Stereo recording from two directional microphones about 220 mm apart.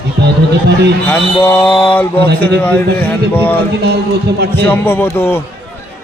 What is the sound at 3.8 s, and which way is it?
Speech, 45° right (ahead or behind).